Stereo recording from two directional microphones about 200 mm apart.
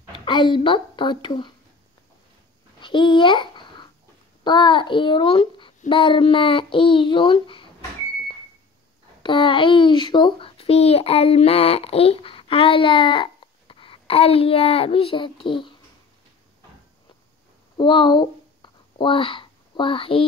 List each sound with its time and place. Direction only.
0.2 s a child's voice: 25° left (ahead or behind)
2.8 s babbling: 25° left (ahead or behind)
4.5 s a child's voice: 25° left (ahead or behind)
9.2 s a child's voice: 25° left (ahead or behind)
17.7 s a sound: 25° left (ahead or behind)